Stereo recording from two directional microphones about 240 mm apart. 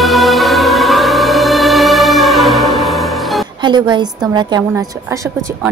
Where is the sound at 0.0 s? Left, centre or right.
Centre.